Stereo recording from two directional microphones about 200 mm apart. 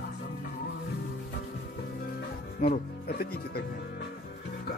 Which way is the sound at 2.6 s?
50° left (ahead or behind).